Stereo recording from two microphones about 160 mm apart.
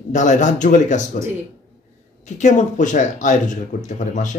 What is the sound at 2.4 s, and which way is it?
Speech, 50° left (ahead or behind).